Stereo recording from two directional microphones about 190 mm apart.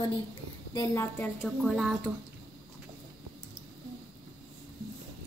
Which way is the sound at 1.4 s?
Centre (ahead or behind).